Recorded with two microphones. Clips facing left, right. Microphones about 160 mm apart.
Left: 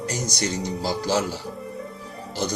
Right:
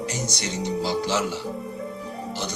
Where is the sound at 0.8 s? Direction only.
40° left (ahead or behind).